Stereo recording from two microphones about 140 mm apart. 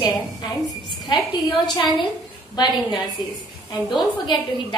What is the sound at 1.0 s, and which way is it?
A woman's voice, 30° left (ahead or behind).